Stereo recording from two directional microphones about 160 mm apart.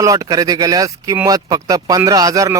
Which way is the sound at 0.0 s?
20° right (ahead or behind).